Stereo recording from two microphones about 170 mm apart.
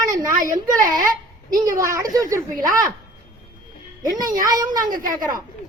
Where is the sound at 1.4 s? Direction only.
20° right (ahead or behind).